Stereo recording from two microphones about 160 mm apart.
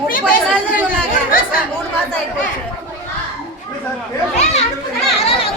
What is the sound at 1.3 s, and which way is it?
Chatter, 65° left (ahead or behind).